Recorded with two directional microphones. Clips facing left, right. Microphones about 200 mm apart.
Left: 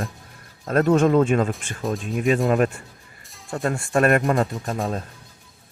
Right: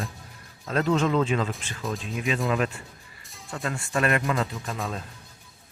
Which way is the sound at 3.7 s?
50° left (ahead or behind).